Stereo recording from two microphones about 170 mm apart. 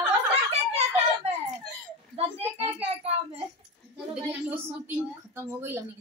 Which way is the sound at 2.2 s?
35° right (ahead or behind).